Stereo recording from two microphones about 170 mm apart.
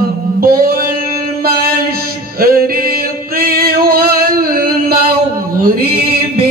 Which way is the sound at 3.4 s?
60° right (ahead or behind).